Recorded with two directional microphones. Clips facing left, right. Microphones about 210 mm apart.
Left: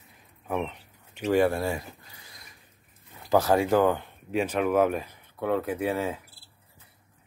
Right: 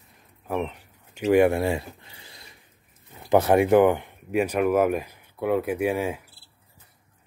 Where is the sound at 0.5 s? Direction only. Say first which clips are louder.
Right 2 dB; 5° right (ahead or behind).